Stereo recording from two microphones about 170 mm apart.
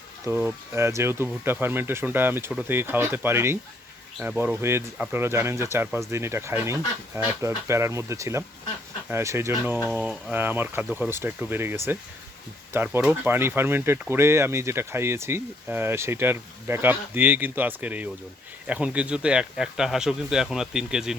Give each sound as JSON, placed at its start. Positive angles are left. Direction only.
{"t": 0.3, "sound": "speech", "side_deg": -10}
{"t": 9.9, "sound": "speech", "side_deg": 0}